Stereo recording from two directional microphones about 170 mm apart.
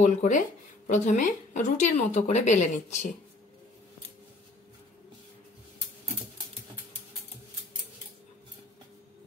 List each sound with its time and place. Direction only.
0.0 s a woman's voice: 45° left (ahead or behind)